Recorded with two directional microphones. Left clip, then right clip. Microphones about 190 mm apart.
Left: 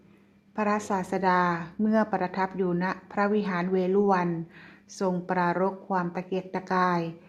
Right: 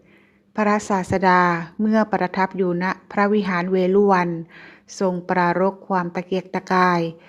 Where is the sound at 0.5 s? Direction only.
30° right (ahead or behind).